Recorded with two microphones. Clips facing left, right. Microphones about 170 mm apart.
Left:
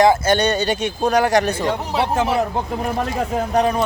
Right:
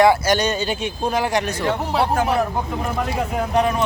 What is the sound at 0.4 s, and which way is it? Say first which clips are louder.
Speech: left 3 dB; 70° left (ahead or behind).